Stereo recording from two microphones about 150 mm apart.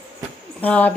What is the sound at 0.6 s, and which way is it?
Speech, 10° left (ahead or behind).